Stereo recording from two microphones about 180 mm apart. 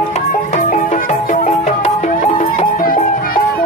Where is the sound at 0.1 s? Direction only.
40° left (ahead or behind).